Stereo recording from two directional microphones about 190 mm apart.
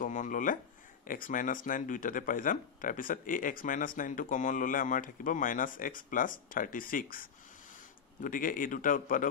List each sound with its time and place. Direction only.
0.0 s speech: 45° left (ahead or behind)